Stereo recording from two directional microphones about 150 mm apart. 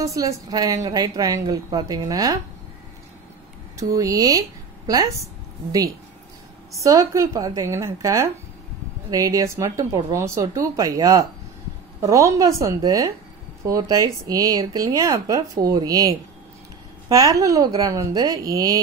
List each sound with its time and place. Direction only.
0.0 s speech: 20° right (ahead or behind)
3.7 s speech: 20° right (ahead or behind)